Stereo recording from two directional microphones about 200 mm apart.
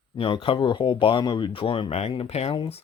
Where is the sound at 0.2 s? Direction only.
25° left (ahead or behind).